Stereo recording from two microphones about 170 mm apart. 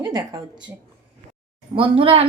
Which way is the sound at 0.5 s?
5° right (ahead or behind).